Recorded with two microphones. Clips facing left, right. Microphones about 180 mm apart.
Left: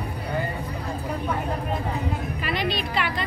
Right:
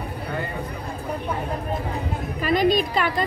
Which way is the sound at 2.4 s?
45° right (ahead or behind).